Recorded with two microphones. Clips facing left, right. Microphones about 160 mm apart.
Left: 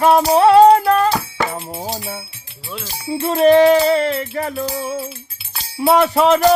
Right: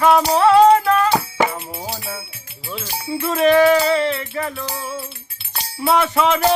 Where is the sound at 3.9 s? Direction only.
45° left (ahead or behind).